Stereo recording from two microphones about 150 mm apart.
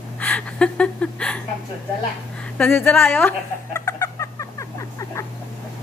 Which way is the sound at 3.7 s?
20° left (ahead or behind).